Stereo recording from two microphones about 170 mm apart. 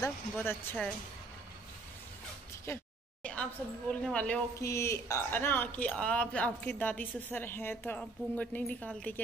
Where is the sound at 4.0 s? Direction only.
5° left (ahead or behind).